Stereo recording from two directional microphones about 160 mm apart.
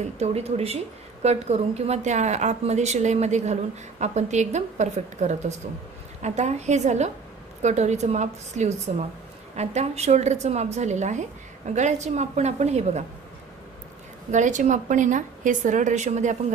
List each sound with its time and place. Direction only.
0.0 s a woman's voice: 40° right (ahead or behind)
14.3 s a woman's voice: 50° right (ahead or behind)